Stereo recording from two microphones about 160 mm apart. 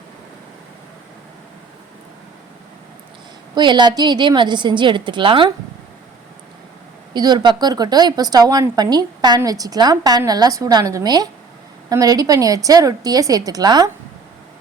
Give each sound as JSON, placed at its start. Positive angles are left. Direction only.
{"t": 3.5, "sound": "a woman's voice", "side_deg": -30}
{"t": 7.1, "sound": "a woman's voice", "side_deg": -25}